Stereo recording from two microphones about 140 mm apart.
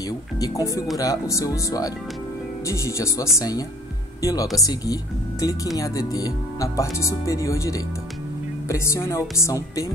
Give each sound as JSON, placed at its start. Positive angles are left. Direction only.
{"t": 0.4, "sound": "speech", "side_deg": 25}